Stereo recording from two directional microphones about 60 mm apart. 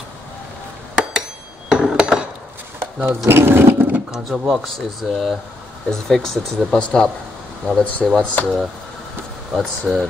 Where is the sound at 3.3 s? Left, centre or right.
Right.